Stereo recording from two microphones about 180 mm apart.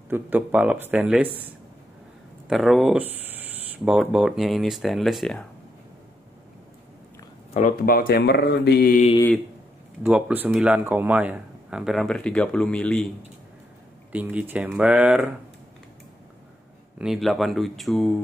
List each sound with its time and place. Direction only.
0.1 s speech: 10° right (ahead or behind)
2.4 s speech: centre (ahead or behind)
7.5 s speech: 50° left (ahead or behind)
10.0 s speech: 5° right (ahead or behind)
14.1 s speech: 10° right (ahead or behind)
17.0 s speech: centre (ahead or behind)